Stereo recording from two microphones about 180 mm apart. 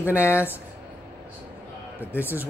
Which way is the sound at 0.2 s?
15° left (ahead or behind).